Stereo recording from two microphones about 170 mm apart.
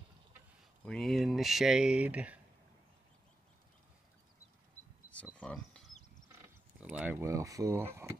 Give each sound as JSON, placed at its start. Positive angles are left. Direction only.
{"t": 0.8, "sound": "speech", "side_deg": 5}
{"t": 5.1, "sound": "a sound", "side_deg": 10}
{"t": 6.8, "sound": "speech", "side_deg": -10}